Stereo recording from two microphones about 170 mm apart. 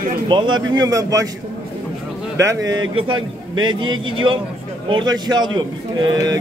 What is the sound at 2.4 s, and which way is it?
A man's voice, 20° right (ahead or behind).